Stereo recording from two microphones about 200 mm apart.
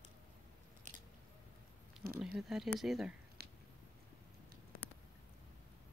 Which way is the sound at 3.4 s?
50° right (ahead or behind).